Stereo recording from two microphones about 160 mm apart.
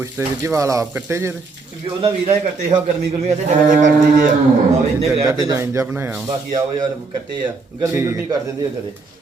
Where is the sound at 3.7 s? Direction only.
55° right (ahead or behind).